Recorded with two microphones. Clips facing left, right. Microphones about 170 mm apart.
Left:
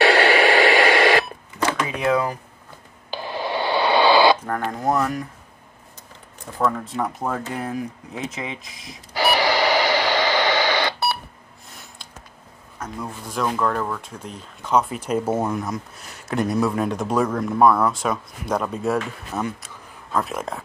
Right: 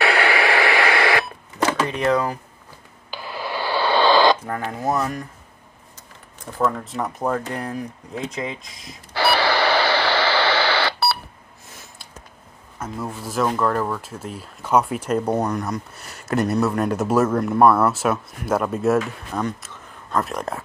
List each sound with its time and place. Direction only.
0.0 s radio: 30° left (ahead or behind)
2.0 s speech: 5° left (ahead or behind)
3.1 s radio: 25° left (ahead or behind)
4.5 s speech: centre (ahead or behind)
6.6 s speech: centre (ahead or behind)
9.1 s radio: 15° left (ahead or behind)
11.7 s a sound: centre (ahead or behind)
12.7 s speech: 10° right (ahead or behind)
15.0 s speech: 5° left (ahead or behind)